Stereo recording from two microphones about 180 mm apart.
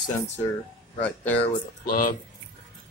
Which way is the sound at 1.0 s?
10° left (ahead or behind).